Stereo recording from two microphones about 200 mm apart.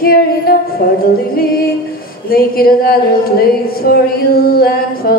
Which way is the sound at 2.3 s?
50° left (ahead or behind).